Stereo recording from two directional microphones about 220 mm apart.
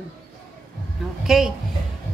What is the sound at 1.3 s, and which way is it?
Speech, centre (ahead or behind).